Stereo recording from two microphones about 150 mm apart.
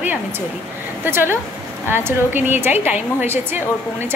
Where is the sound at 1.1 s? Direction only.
15° right (ahead or behind).